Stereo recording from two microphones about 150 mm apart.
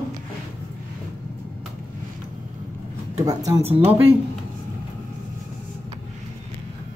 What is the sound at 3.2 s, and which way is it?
Speech, 25° right (ahead or behind).